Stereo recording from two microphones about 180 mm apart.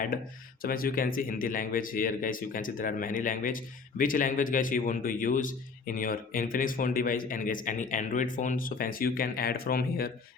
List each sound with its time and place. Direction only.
0.6 s speech: 55° left (ahead or behind)